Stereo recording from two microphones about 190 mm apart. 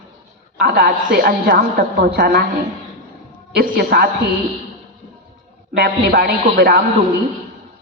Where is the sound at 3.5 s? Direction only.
55° right (ahead or behind).